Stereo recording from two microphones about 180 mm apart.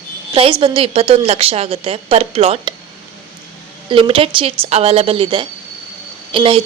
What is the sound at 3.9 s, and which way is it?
A woman's voice, 30° right (ahead or behind).